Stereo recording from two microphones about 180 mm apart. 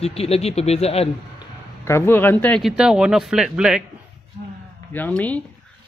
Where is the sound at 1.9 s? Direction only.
15° left (ahead or behind); by 3.8 s 5° right (ahead or behind).